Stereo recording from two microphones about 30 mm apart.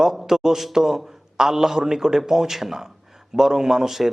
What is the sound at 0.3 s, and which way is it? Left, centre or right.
A man's voice, centre.